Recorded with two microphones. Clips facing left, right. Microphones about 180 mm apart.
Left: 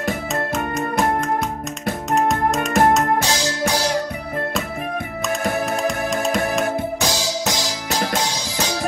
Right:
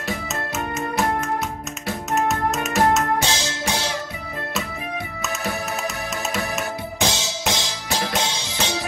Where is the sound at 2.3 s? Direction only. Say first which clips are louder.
Left 4 dB; 50° left (ahead or behind).